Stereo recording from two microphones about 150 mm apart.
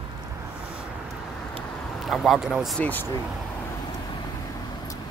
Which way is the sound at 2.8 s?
10° left (ahead or behind).